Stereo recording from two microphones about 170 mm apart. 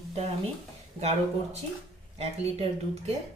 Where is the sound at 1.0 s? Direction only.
40° right (ahead or behind).